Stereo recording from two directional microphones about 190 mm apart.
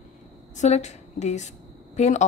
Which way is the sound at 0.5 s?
35° left (ahead or behind).